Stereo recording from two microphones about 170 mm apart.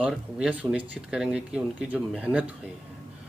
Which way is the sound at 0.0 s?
5° right (ahead or behind).